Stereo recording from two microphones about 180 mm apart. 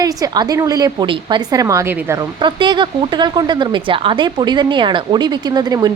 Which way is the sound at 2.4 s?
25° right (ahead or behind).